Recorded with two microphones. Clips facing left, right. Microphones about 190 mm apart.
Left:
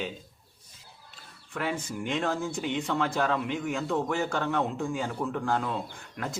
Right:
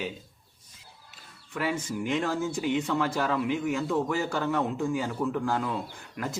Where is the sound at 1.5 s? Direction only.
5° right (ahead or behind).